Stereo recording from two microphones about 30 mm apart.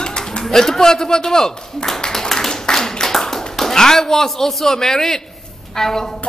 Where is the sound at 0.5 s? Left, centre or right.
Centre.